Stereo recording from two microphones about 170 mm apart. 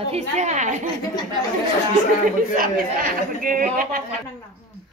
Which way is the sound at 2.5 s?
55° right (ahead or behind).